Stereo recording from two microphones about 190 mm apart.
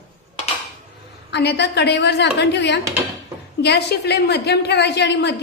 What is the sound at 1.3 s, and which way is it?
A woman's voice, 65° left (ahead or behind).